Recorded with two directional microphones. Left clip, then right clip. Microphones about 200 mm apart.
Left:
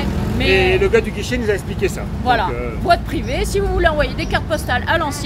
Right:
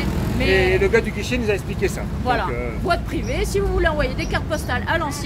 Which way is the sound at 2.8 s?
15° left (ahead or behind).